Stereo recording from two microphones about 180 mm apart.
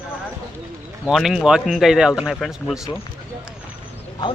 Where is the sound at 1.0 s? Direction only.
Centre (ahead or behind).